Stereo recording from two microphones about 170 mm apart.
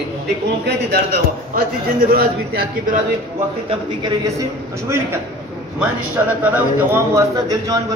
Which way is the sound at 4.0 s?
20° right (ahead or behind).